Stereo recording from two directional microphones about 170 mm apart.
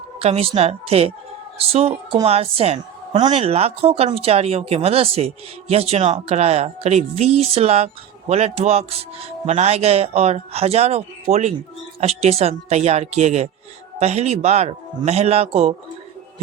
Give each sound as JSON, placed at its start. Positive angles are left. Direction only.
{"t": 0.2, "sound": "a woman's voice", "side_deg": -35}